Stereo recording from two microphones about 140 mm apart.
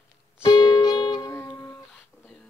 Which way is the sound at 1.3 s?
15° left (ahead or behind).